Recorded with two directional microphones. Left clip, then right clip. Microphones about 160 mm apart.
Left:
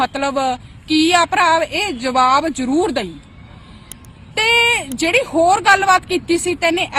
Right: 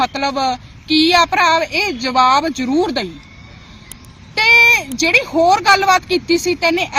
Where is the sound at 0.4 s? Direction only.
30° left (ahead or behind).